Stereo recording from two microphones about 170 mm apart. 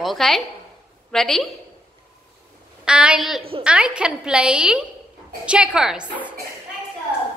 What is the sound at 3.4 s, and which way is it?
Speech, 35° right (ahead or behind).